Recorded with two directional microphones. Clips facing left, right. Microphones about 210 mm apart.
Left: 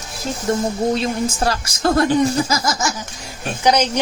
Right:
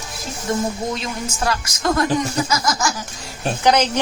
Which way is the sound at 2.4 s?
25° left (ahead or behind).